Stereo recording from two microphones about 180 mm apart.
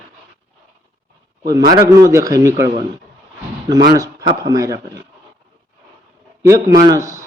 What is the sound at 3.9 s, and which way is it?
Speech, 20° right (ahead or behind).